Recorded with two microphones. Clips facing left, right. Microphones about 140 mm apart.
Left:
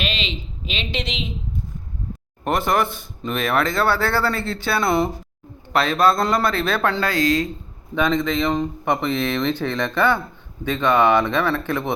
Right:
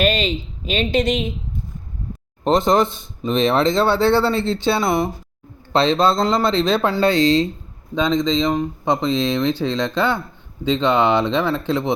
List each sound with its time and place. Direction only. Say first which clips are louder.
0.0 s speech: right 9 dB; 45° right (ahead or behind)
2.4 s speech: right 4 dB; 20° right (ahead or behind)